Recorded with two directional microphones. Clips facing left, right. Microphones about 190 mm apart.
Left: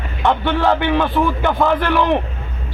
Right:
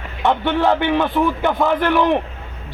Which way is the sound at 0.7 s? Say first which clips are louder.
Left 2 dB; 15° right (ahead or behind).